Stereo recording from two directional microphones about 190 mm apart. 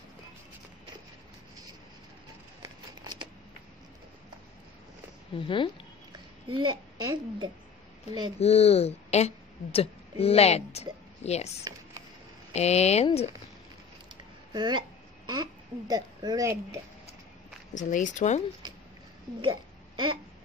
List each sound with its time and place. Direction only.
2.6 s a sound: 20° right (ahead or behind)
5.4 s speech: 25° left (ahead or behind)
6.1 s a child's voice: 25° right (ahead or behind)
8.4 s speech: 35° left (ahead or behind)
11.7 s a sound: 20° right (ahead or behind)
12.5 s speech: 35° left (ahead or behind)
14.5 s a sound: 25° right (ahead or behind)
15.9 s speech: 20° right (ahead or behind)
17.7 s speech: 40° left (ahead or behind)
19.4 s hiccup: 25° right (ahead or behind)